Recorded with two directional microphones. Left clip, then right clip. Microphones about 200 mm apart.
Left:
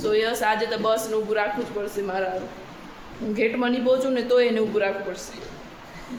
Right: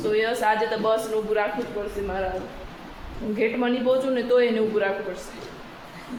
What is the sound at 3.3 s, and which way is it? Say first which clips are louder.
A man's voice: even; 15° left (ahead or behind).